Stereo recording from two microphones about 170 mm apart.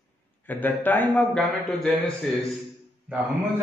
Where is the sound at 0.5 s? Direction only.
10° left (ahead or behind).